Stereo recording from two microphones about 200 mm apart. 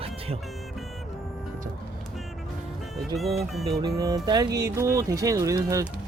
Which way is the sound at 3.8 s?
20° right (ahead or behind).